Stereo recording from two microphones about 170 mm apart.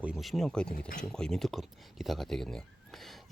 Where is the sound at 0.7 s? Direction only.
55° left (ahead or behind).